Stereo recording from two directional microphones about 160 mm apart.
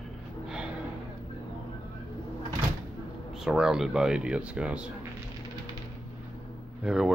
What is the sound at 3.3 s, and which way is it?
Speech, 5° right (ahead or behind).